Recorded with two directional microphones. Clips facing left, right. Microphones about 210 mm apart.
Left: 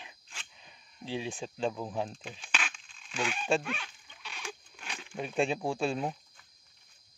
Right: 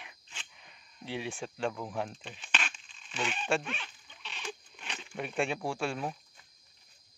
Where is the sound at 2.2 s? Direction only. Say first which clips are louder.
Even; 5° left (ahead or behind).